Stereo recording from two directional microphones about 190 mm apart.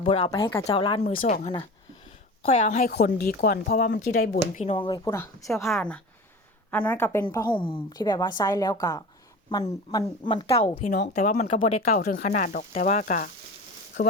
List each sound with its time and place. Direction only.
0.0 s a woman's voice: 30° left (ahead or behind)
1.2 s a woman's voice: 40° left (ahead or behind)
2.8 s speech: 55° left (ahead or behind)
4.4 s a woman's voice: 35° left (ahead or behind)
5.1 s a woman's voice: 10° left (ahead or behind)
7.5 s a woman's voice: 25° left (ahead or behind)
11.2 s speech: 40° left (ahead or behind)